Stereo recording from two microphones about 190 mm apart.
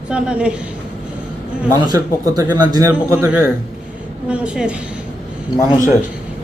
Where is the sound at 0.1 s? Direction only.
5° right (ahead or behind).